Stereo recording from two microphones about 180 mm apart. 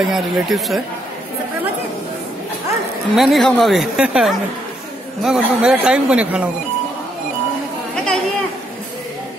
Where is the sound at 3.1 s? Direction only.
Centre (ahead or behind).